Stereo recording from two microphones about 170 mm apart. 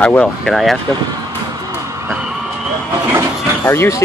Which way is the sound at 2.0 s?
5° right (ahead or behind).